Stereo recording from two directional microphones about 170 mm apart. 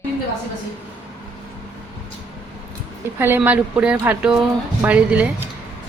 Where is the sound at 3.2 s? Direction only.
10° right (ahead or behind).